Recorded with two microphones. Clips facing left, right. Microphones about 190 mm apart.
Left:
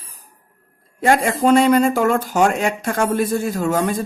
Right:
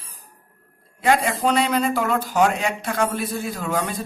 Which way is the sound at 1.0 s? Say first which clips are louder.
Left 3 dB; 45° left (ahead or behind).